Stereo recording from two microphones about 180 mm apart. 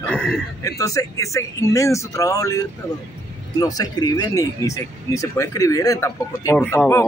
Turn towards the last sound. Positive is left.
turn(degrees=15)  # may be behind; listen again after turning